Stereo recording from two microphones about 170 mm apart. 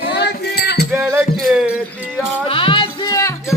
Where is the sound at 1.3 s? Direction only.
Centre (ahead or behind).